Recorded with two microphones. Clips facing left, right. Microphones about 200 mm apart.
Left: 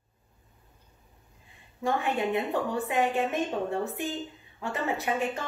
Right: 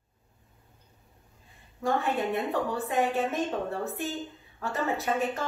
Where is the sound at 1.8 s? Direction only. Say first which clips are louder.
Even; 15° left (ahead or behind).